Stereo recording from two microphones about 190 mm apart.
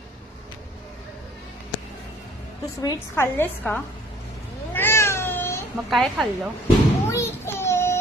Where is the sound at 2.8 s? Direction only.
15° left (ahead or behind).